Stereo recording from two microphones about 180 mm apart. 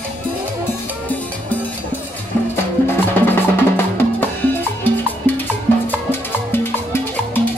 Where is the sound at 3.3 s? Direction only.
10° left (ahead or behind).